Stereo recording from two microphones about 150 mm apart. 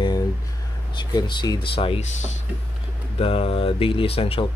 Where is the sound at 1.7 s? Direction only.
40° left (ahead or behind).